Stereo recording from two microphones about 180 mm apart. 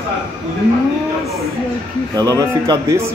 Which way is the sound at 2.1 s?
20° right (ahead or behind).